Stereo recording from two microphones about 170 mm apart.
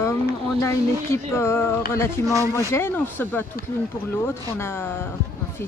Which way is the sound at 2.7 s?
15° left (ahead or behind).